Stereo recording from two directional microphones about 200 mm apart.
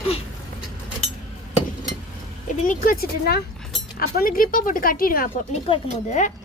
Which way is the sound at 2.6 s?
40° left (ahead or behind).